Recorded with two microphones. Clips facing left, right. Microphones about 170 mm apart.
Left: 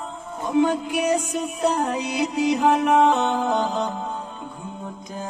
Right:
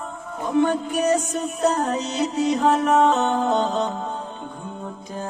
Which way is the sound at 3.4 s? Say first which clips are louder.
Right 2 dB; 35° right (ahead or behind).